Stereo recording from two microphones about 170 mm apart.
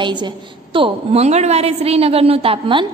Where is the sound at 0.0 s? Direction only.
25° right (ahead or behind).